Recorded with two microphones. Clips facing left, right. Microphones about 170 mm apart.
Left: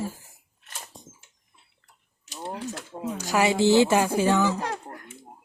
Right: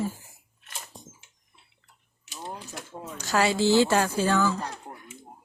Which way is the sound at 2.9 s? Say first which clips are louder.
Left 1 dB; 15° left (ahead or behind).